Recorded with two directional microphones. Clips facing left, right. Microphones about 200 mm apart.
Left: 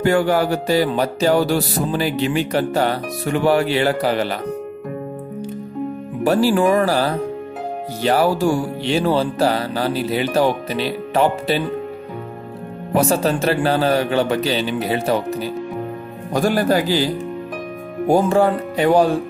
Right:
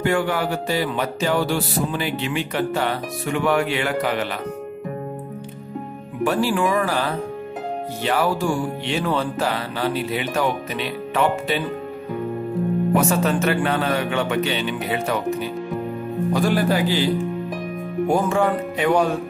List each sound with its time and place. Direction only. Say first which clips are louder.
0.0 s music: left 5 dB; 40° left (ahead or behind)
6.2 s music: left 5 dB; 40° left (ahead or behind)
12.9 s music: left 5 dB; 35° left (ahead or behind)
16.3 s speech: left 4 dB; 45° left (ahead or behind)
18.0 s music: left 5 dB; 35° left (ahead or behind)